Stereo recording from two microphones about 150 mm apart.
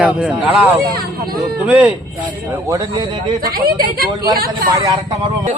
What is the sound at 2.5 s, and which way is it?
Speech, 25° right (ahead or behind).